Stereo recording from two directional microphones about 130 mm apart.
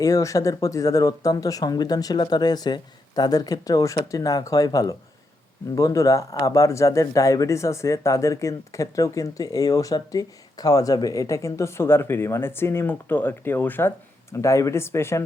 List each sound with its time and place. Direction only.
0.0 s speech: 25° left (ahead or behind)